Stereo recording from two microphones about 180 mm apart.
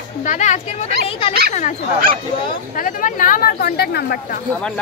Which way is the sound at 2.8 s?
50° left (ahead or behind).